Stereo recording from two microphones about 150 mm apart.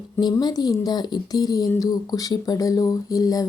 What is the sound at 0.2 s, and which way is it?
Speech, 30° left (ahead or behind).